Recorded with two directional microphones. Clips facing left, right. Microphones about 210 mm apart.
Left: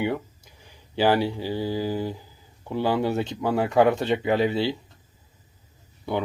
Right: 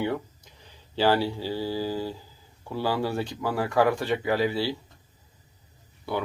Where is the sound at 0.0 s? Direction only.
15° left (ahead or behind).